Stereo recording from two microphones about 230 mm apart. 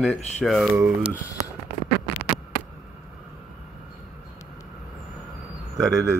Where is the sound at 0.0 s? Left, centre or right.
Centre.